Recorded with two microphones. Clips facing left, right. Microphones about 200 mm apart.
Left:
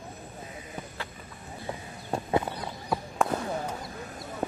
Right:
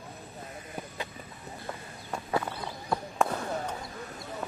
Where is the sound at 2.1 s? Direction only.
20° left (ahead or behind).